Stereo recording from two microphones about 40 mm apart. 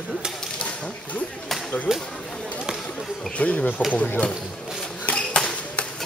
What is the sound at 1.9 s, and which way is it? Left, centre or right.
Speech, centre.